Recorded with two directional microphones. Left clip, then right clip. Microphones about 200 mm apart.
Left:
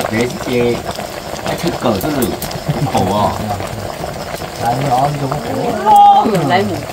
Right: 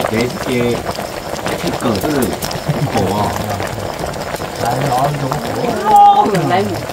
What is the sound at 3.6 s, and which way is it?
Boiling, 15° right (ahead or behind).